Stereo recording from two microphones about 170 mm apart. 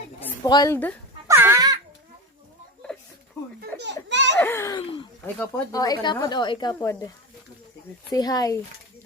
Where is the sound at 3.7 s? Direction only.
90° right.